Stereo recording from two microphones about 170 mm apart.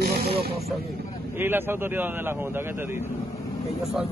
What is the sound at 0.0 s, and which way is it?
Vehicle, 65° right (ahead or behind).